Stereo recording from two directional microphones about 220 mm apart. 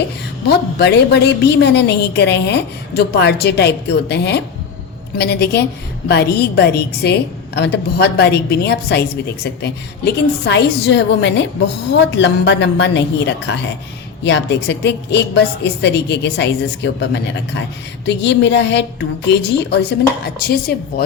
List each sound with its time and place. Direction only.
0.4 s a woman's voice: 50° left (ahead or behind)